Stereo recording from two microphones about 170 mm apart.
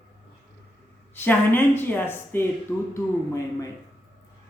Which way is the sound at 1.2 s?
10° left (ahead or behind).